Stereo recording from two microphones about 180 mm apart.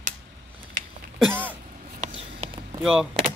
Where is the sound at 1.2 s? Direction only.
10° right (ahead or behind).